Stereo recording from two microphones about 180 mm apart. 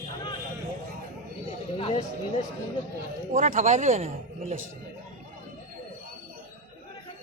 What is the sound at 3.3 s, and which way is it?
Speech, 45° right (ahead or behind).